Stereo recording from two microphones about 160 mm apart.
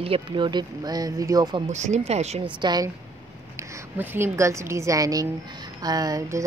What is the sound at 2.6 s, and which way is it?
Speech, 25° right (ahead or behind).